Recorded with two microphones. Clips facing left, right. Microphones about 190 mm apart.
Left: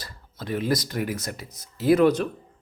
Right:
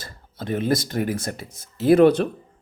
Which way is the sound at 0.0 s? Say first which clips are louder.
Right 4 dB; 50° right (ahead or behind).